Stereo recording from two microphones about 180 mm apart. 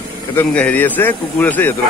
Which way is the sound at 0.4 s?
10° left (ahead or behind).